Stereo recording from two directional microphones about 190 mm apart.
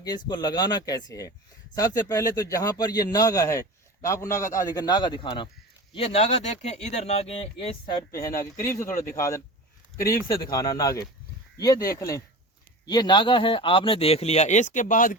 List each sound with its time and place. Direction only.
0.0 s a man's voice: 20° left (ahead or behind)
8.1 s speech: 15° left (ahead or behind)
10.0 s a man's voice: 15° left (ahead or behind); by 15.1 s 45° left (ahead or behind)